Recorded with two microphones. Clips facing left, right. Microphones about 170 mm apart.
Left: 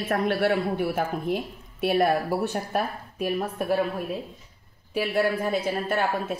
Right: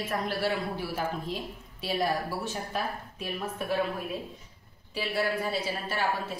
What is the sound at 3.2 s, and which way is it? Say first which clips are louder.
Speech: left 7 dB; 45° left (ahead or behind).